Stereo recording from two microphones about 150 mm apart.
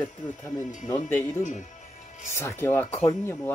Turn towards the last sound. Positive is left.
turn(degrees=15)  # may be behind; listen again after turning